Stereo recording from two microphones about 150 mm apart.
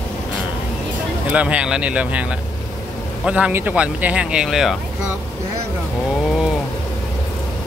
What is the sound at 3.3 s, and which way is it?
Speech, 10° right (ahead or behind).